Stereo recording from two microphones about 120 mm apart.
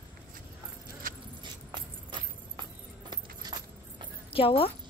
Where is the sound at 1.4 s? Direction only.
40° right (ahead or behind).